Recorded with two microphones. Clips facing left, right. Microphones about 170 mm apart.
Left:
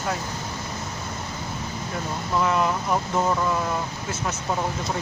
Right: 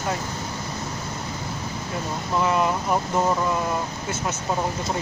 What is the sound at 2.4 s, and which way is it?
Speech, 5° right (ahead or behind).